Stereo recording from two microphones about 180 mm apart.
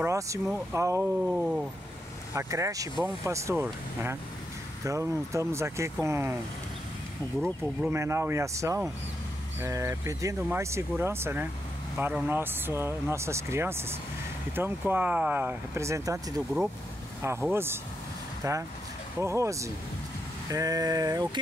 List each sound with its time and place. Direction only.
0.0 s speech: 15° right (ahead or behind)
1.2 s a sound: 5° right (ahead or behind)
2.3 s speech: 15° right (ahead or behind)
7.9 s speech: 15° right (ahead or behind)